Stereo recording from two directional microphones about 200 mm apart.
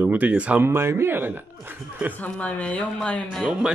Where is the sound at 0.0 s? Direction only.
10° right (ahead or behind).